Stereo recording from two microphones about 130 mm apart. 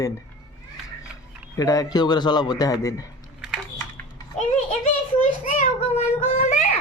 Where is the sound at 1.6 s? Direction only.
30° left (ahead or behind).